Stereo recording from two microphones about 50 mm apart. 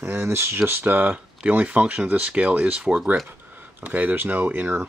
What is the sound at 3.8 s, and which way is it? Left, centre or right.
Speech, right.